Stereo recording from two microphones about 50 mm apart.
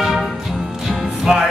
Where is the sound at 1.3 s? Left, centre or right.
Centre.